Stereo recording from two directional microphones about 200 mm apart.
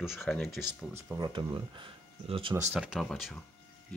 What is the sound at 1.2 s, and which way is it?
Speech, 25° right (ahead or behind).